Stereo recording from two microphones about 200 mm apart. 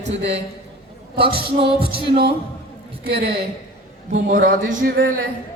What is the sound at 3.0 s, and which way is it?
A man's voice, 55° right (ahead or behind).